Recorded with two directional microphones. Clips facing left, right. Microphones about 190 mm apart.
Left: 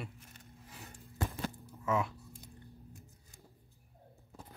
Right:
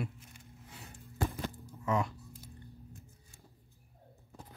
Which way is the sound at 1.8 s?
Centre (ahead or behind).